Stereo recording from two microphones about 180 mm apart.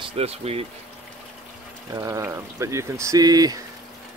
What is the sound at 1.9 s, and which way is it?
Speech, 20° right (ahead or behind).